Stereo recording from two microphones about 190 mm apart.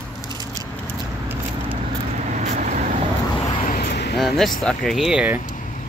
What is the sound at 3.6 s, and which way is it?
Vehicle, 50° left (ahead or behind).